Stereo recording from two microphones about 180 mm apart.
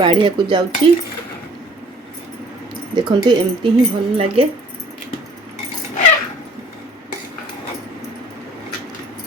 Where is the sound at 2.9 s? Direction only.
25° right (ahead or behind).